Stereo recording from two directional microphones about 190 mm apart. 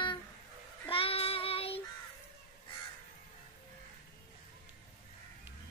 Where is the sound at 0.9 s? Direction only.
30° left (ahead or behind).